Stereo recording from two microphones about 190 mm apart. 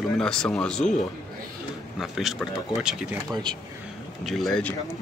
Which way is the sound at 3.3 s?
25° right (ahead or behind).